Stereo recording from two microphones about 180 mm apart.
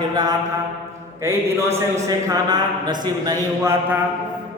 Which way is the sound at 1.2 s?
15° right (ahead or behind).